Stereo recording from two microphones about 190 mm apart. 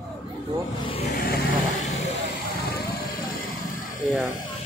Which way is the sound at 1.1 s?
55° left (ahead or behind).